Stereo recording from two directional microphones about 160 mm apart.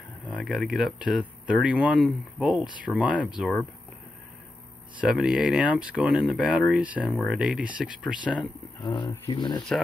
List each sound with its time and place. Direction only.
0.4 s speech: centre (ahead or behind)
5.0 s speech: 5° right (ahead or behind)
8.8 s speech: 30° left (ahead or behind)